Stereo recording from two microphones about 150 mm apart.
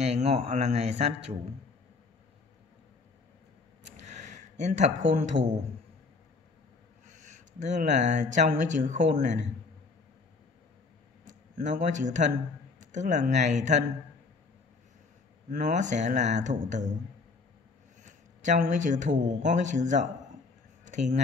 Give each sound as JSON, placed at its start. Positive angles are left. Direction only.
{"t": 0.0, "sound": "a man's voice", "side_deg": -45}
{"t": 3.8, "sound": "a sound", "side_deg": -50}
{"t": 7.1, "sound": "speech", "side_deg": -50}
{"t": 11.2, "sound": "a man's voice", "side_deg": -55}
{"t": 15.5, "sound": "speech", "side_deg": -55}
{"t": 18.0, "sound": "a man's voice", "side_deg": -55}
{"t": 20.8, "sound": "a sound", "side_deg": -55}